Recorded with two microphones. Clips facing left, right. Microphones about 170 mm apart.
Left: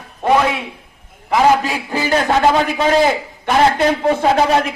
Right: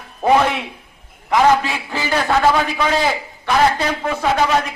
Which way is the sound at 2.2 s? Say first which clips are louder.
Even; 20° left (ahead or behind).